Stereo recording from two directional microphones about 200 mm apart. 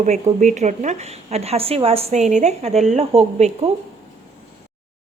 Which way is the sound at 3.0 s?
30° right (ahead or behind).